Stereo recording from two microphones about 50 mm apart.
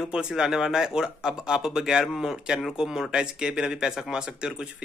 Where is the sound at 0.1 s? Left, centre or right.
Centre.